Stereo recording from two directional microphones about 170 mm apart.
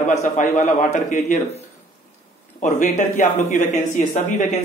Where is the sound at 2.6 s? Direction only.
45° left (ahead or behind).